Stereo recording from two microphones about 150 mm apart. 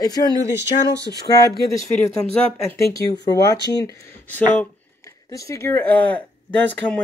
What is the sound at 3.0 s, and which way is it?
Speech, 25° left (ahead or behind).